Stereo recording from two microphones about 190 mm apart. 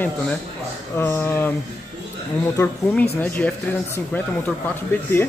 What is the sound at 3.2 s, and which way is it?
Speech, 10° left (ahead or behind).